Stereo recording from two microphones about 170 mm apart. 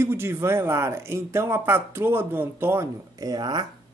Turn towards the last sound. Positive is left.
turn(degrees=-25)  # may be behind; listen again after turning